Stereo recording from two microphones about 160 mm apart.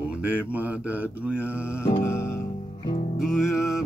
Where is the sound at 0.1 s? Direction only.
10° right (ahead or behind).